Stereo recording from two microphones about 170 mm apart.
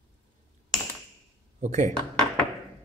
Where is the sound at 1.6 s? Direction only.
45° right (ahead or behind).